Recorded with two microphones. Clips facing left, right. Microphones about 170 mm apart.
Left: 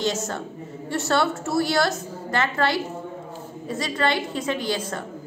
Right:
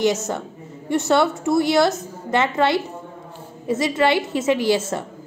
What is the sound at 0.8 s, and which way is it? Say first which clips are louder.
A woman's voice: right 5 dB; 20° right (ahead or behind).